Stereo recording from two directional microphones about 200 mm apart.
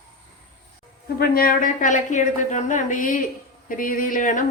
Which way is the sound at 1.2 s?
45° left (ahead or behind).